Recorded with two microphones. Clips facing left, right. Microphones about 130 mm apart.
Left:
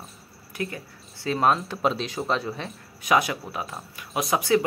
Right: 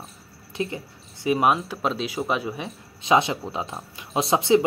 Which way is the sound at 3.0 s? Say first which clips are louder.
Right 2 dB; 25° right (ahead or behind).